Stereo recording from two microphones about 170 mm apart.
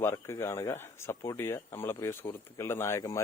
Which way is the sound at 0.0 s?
15° left (ahead or behind).